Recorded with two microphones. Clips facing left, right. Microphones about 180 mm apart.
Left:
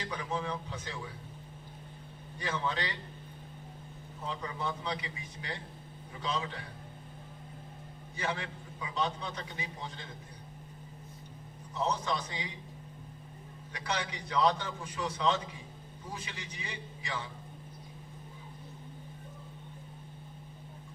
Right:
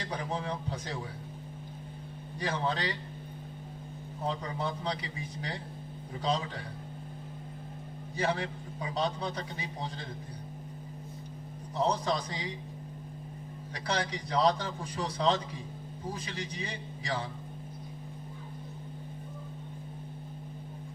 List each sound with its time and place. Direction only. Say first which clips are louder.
0.0 s a man's voice: right 1 dB; 35° right (ahead or behind)
2.4 s a man's voice: right 3 dB; 35° right (ahead or behind)
4.3 s a man's voice: right 3 dB; 35° right (ahead or behind)
8.2 s a man's voice: right 5 dB; 35° right (ahead or behind)
11.7 s a man's voice: right 3 dB; 35° right (ahead or behind)
13.7 s a man's voice: right 3 dB; 35° right (ahead or behind)